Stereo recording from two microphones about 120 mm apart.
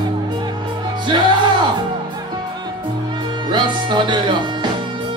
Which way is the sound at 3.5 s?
40° right (ahead or behind).